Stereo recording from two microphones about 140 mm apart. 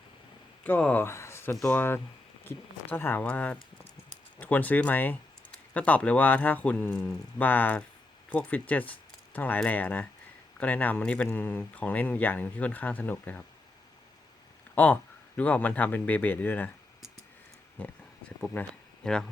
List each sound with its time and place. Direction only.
0.6 s speech: 10° left (ahead or behind)
14.8 s speech: 10° left (ahead or behind)
17.8 s speech: 10° left (ahead or behind)
19.0 s speech: 5° left (ahead or behind)